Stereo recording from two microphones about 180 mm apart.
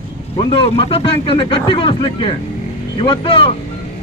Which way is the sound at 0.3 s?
30° left (ahead or behind).